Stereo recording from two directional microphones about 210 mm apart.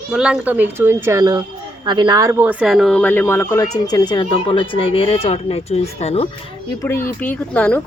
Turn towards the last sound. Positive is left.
turn(degrees=5)  # may be behind; listen again after turning